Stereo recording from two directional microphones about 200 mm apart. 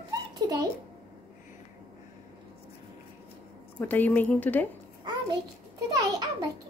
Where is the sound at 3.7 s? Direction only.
10° left (ahead or behind).